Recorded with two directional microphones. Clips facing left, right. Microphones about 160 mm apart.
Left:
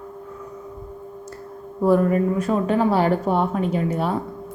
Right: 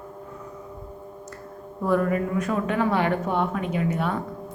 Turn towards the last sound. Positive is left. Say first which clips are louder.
# left 3 dB
turn(degrees=35)  # may be behind; listen again after turning